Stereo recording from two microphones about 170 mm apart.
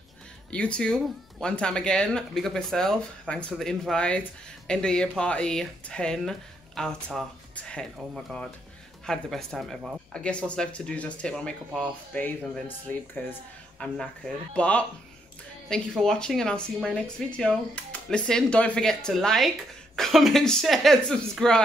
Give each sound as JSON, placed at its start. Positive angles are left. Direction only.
{"t": 0.5, "sound": "speech", "side_deg": 5}
{"t": 16.0, "sound": "speech", "side_deg": 5}